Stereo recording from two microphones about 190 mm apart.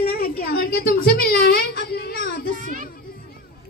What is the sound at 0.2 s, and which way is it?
Whimper, 55° left (ahead or behind).